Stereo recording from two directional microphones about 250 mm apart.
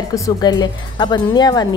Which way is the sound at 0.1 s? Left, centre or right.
Centre.